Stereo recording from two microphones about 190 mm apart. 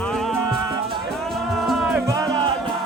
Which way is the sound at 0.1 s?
Centre (ahead or behind).